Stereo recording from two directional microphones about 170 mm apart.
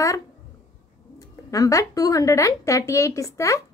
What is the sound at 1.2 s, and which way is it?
A woman's voice, 20° left (ahead or behind).